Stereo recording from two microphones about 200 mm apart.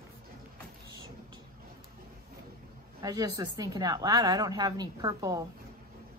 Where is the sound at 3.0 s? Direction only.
20° right (ahead or behind).